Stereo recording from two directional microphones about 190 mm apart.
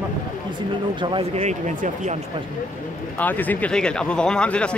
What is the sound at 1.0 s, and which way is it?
Speech, 25° right (ahead or behind).